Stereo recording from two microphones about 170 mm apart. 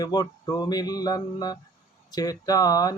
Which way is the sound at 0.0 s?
20° left (ahead or behind).